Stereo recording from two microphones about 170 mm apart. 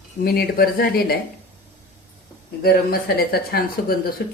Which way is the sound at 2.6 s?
65° left (ahead or behind).